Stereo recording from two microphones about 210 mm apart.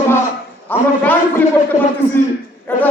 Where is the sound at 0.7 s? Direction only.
10° left (ahead or behind).